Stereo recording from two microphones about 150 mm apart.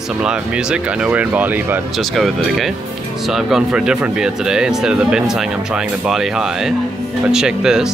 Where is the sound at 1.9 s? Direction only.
Centre (ahead or behind).